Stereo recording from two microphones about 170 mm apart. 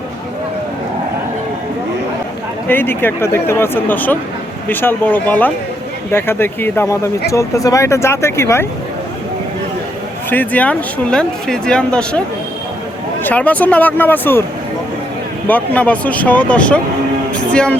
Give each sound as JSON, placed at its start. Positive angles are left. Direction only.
{"t": 2.6, "sound": "speech", "side_deg": 10}
{"t": 10.2, "sound": "speech", "side_deg": 10}
{"t": 13.2, "sound": "speech", "side_deg": 10}
{"t": 15.4, "sound": "speech", "side_deg": 10}